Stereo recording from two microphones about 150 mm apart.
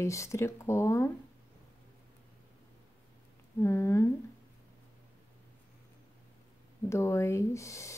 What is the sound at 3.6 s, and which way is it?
Speech, 20° left (ahead or behind).